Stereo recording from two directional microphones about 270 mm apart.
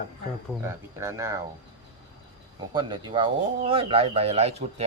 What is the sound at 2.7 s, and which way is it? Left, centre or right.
Speech, centre.